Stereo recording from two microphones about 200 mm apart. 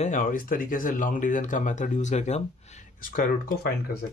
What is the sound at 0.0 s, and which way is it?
Speech, 40° left (ahead or behind).